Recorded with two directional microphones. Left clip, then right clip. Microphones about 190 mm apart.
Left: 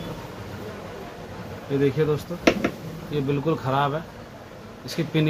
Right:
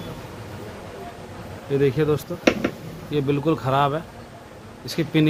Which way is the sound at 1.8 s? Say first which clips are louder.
Right 2 dB; 55° right (ahead or behind).